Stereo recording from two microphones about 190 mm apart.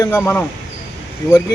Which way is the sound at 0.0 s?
10° left (ahead or behind).